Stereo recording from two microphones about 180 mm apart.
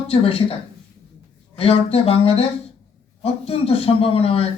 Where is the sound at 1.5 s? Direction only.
30° left (ahead or behind).